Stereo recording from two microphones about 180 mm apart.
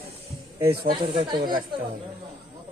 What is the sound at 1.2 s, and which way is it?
Speech, 25° right (ahead or behind).